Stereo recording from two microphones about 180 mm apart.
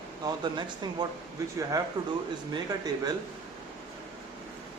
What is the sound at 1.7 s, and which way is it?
Speech, 20° right (ahead or behind).